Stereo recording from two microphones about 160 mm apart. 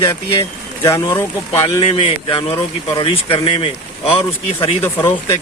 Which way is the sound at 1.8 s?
35° left (ahead or behind).